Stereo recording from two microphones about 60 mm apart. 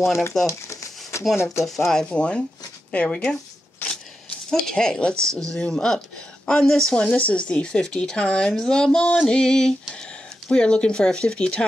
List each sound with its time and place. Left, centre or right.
0.0 s speech: left
0.5 s a sound: left
1.4 s speech: left
1.9 s speech: centre
3.9 s a sound: centre
5.1 s speech: right
5.5 s speech: centre
7.0 s speech: left